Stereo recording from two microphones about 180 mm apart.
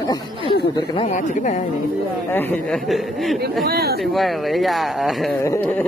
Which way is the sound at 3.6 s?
60° right (ahead or behind).